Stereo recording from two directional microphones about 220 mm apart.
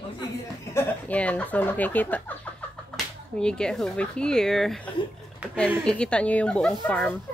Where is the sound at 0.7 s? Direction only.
5° left (ahead or behind).